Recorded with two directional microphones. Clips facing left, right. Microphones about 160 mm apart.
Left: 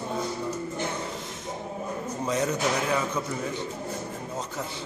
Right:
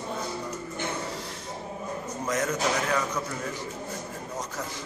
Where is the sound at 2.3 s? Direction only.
10° left (ahead or behind).